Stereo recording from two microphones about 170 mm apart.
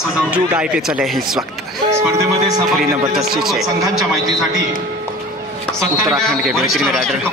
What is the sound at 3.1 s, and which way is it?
Speech, centre (ahead or behind).